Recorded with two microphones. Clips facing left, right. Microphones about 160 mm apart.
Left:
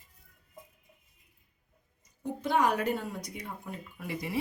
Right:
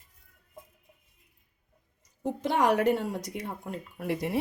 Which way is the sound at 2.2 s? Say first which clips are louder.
Right 2 dB; 90° right.